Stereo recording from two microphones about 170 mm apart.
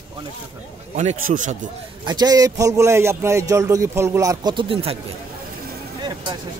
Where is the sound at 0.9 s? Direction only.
45° right (ahead or behind).